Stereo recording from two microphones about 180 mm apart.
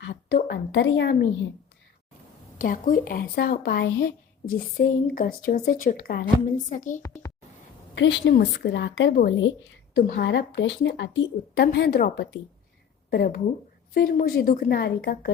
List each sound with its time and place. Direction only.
0.1 s a woman's voice: 65° left (ahead or behind)
2.6 s speech: 50° left (ahead or behind)
7.0 s a child's voice: 15° left (ahead or behind)
7.9 s a woman's voice: 80° left; by 15.2 s 60° left (ahead or behind)